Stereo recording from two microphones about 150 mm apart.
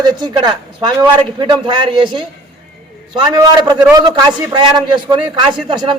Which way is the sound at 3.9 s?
25° right (ahead or behind).